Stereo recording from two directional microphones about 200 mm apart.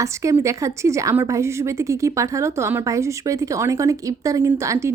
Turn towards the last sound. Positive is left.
turn(degrees=-15)  # may be behind; listen again after turning